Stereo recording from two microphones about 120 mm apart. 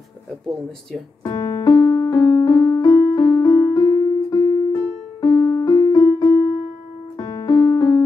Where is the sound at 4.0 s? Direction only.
30° left (ahead or behind).